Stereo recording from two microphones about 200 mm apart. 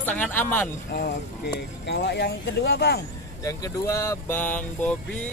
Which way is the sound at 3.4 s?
15° left (ahead or behind).